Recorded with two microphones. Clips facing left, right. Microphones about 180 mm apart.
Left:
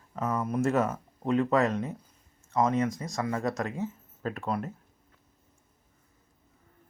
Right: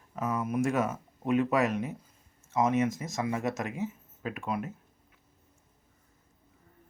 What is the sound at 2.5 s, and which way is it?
Speech, 20° right (ahead or behind).